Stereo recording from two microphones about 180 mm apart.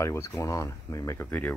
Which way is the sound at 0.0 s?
15° left (ahead or behind).